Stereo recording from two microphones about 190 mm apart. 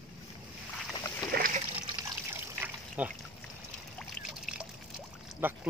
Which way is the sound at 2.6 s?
5° right (ahead or behind).